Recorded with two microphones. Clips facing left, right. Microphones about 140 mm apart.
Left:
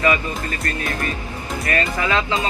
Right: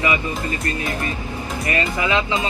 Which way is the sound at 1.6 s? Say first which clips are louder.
Even; 20° right (ahead or behind).